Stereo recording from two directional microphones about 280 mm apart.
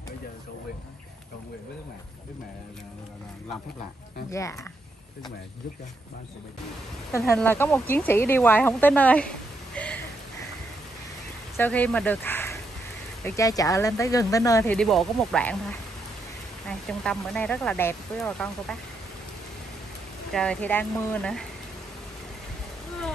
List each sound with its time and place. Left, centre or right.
4.3 s speech: centre
7.2 s speech: centre
9.8 s a sound: centre
11.5 s speech: centre
16.6 s speech: centre
20.3 s speech: centre